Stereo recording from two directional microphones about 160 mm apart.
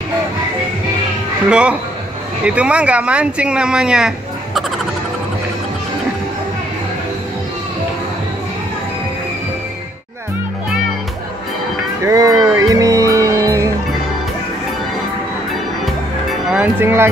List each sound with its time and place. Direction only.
1.5 s speech: 5° right (ahead or behind)
12.0 s speech: 20° right (ahead or behind)
12.5 s music: 20° right (ahead or behind)
15.8 s music: centre (ahead or behind)
16.8 s speech: 15° right (ahead or behind)